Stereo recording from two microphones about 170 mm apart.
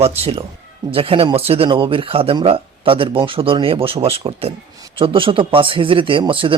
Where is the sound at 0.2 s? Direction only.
35° right (ahead or behind).